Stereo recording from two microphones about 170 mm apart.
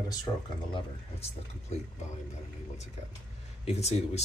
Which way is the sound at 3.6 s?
40° left (ahead or behind).